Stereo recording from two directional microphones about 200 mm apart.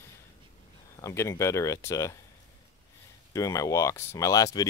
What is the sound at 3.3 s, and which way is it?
Speech, 15° left (ahead or behind).